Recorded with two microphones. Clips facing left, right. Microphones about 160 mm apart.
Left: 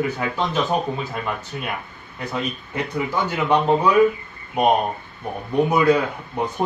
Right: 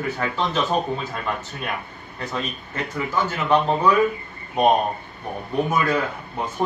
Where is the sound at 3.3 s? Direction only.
15° left (ahead or behind).